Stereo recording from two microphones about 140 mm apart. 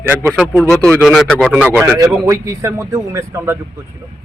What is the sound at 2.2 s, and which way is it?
A man's voice, 20° right (ahead or behind).